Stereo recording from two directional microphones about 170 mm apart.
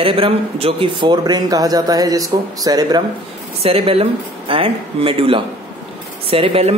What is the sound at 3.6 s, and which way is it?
Speech, 35° right (ahead or behind).